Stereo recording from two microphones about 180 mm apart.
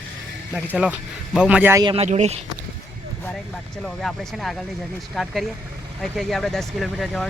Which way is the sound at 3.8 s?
Centre (ahead or behind).